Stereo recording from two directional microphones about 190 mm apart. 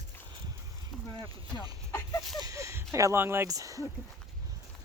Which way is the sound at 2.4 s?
15° right (ahead or behind).